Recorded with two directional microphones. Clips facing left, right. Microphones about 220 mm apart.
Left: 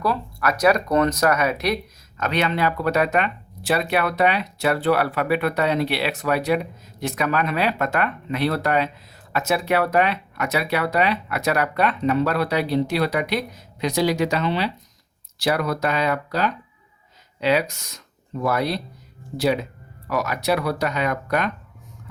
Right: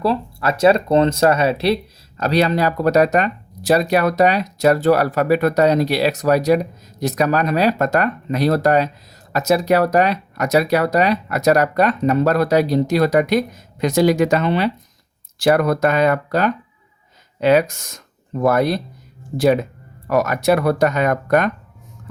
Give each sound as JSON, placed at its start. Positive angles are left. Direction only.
{"t": 0.0, "sound": "speech", "side_deg": -25}